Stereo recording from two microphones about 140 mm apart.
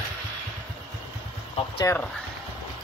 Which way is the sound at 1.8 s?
20° left (ahead or behind).